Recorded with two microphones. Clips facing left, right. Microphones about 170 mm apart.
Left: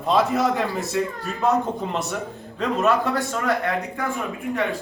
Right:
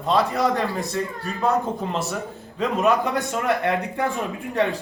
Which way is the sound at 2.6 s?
15° right (ahead or behind).